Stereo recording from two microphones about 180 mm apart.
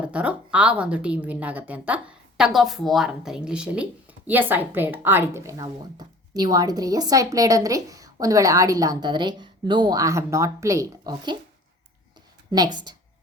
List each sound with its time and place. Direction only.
0.0 s a woman's voice: 5° right (ahead or behind); by 11.3 s 25° right (ahead or behind)
12.5 s a woman's voice: 25° right (ahead or behind)